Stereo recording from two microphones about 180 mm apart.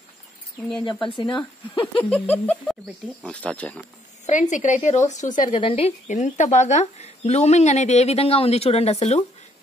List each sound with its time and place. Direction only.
1.0 s speech: 25° left (ahead or behind)
2.0 s speech: 5° left (ahead or behind)
4.3 s a woman's voice: 45° left (ahead or behind)
5.6 s a woman's voice: 35° left (ahead or behind)